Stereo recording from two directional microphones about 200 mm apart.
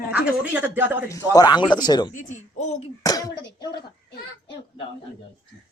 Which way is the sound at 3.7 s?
55° left (ahead or behind).